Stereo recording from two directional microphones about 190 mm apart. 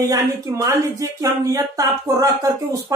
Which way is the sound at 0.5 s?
15° right (ahead or behind).